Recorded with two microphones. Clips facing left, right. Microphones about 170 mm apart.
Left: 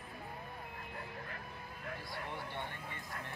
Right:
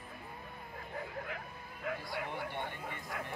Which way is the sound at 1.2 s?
70° right (ahead or behind).